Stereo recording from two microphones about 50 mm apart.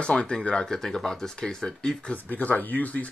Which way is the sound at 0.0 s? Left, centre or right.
Centre.